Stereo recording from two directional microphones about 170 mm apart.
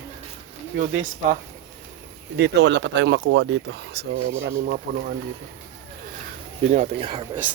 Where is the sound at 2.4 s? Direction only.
90° right; by 5.1 s 60° right (ahead or behind).